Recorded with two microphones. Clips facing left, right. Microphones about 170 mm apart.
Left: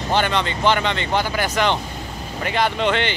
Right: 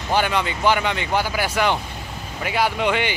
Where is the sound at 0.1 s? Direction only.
10° right (ahead or behind).